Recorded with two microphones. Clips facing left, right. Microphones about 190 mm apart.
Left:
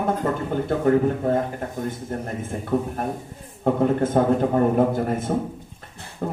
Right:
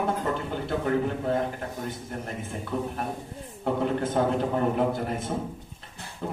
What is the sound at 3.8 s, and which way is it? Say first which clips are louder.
Speech: left 6 dB; 45° left (ahead or behind).